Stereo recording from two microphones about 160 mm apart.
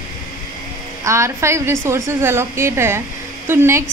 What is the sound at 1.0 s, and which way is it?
A woman's voice, 20° right (ahead or behind).